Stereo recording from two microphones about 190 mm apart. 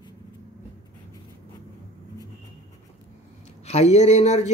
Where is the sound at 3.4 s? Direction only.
35° left (ahead or behind).